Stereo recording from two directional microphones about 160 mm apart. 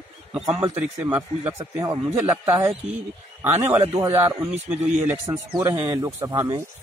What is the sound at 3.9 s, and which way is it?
Speech, 15° right (ahead or behind).